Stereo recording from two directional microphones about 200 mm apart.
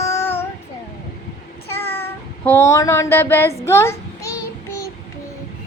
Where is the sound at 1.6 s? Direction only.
10° left (ahead or behind).